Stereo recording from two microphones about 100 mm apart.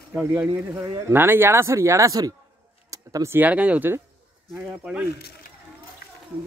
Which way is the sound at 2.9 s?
30° right (ahead or behind).